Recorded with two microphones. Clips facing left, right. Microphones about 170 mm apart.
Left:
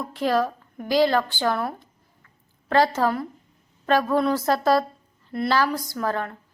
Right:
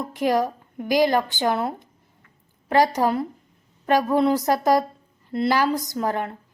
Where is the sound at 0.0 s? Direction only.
15° right (ahead or behind).